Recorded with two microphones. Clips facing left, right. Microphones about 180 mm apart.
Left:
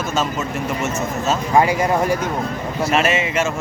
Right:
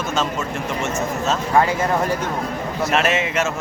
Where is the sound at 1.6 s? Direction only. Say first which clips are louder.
Left 2 dB; 15° left (ahead or behind).